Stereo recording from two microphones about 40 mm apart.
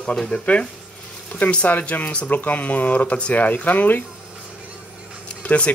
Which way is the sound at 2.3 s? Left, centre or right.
Left.